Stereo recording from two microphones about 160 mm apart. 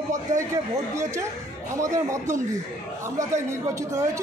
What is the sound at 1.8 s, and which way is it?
Speech, 20° right (ahead or behind).